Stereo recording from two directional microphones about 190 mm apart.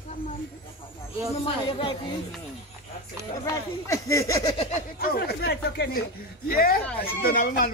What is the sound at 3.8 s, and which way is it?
Speech, 15° left (ahead or behind).